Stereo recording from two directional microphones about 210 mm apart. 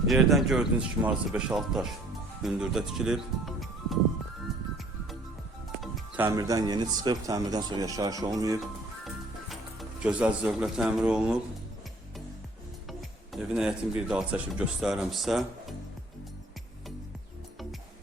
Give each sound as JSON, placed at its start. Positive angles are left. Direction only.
{"t": 0.1, "sound": "speech", "side_deg": 0}
{"t": 5.8, "sound": "speech", "side_deg": -10}
{"t": 10.0, "sound": "speech", "side_deg": -5}
{"t": 12.9, "sound": "speech", "side_deg": 0}